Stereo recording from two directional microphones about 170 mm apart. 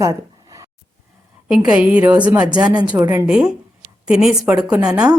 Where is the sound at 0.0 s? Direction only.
20° right (ahead or behind).